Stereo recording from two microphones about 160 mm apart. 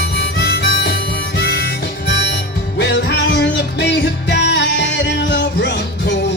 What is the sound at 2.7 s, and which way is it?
Music, 90° left.